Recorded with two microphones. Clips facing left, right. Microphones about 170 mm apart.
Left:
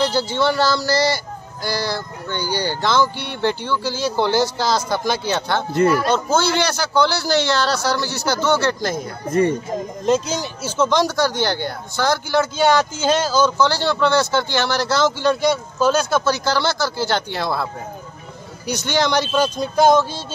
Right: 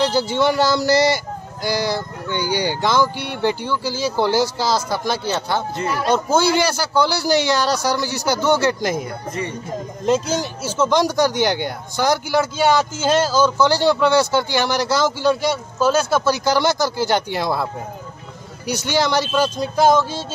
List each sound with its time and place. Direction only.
0.0 s speech: 15° right (ahead or behind)
9.3 s speech: 45° left (ahead or behind)
10.0 s speech: 5° right (ahead or behind)
18.7 s speech: 10° right (ahead or behind)